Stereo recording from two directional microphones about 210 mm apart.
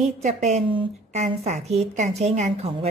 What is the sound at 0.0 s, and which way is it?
A woman's voice, 35° right (ahead or behind).